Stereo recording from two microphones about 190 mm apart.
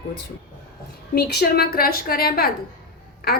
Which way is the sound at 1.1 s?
55° left (ahead or behind).